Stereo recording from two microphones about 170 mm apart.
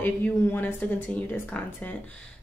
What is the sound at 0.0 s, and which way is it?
Speech, 10° left (ahead or behind).